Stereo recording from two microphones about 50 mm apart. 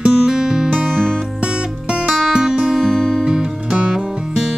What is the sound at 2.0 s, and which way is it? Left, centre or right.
Music, centre.